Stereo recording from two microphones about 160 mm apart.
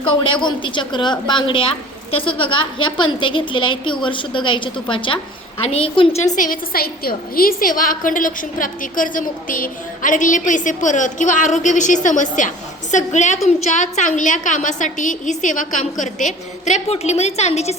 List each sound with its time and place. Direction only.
0.1 s a woman's voice: 30° left (ahead or behind)